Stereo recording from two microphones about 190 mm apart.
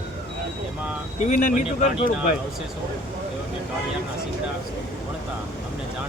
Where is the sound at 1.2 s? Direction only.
40° left (ahead or behind).